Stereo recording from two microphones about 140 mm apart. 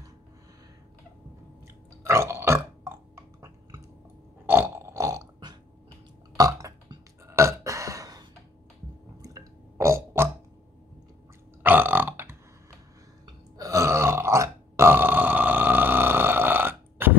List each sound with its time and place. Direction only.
2.0 s burping: 20° right (ahead or behind)
11.6 s burping: 15° right (ahead or behind)
13.6 s burping: 20° right (ahead or behind)